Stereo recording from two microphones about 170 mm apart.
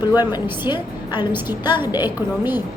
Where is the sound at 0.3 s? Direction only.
25° left (ahead or behind).